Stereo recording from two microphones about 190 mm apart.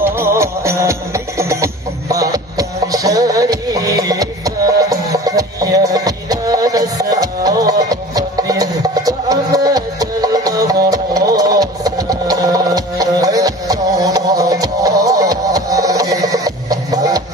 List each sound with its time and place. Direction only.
0.0 s music: 15° right (ahead or behind)